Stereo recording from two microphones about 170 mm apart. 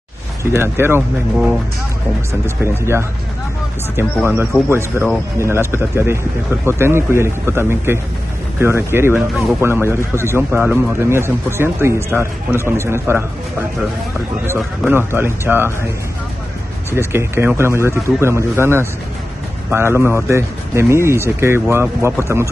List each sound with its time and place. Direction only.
0.4 s a man's voice: 15° right (ahead or behind)
14.9 s a man's voice: 15° right (ahead or behind)
17.1 s a man's voice: 15° right (ahead or behind)